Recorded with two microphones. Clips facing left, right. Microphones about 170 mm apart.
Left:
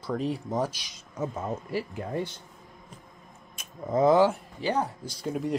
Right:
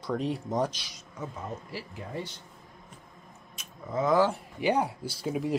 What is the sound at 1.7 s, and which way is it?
Speech, 50° left (ahead or behind).